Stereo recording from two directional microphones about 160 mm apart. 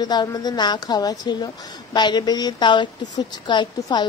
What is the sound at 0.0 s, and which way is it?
A woman's voice, 25° left (ahead or behind).